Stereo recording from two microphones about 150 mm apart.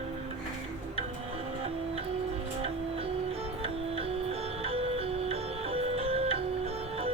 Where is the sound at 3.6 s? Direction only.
40° right (ahead or behind).